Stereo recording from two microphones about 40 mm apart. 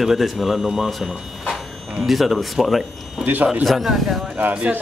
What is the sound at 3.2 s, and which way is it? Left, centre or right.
Speech, right.